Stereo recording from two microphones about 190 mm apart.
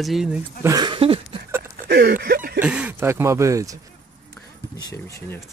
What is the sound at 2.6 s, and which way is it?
Speech, 5° right (ahead or behind).